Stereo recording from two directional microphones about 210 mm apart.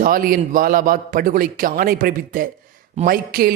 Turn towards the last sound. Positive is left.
turn(degrees=-45)  # may be behind; listen again after turning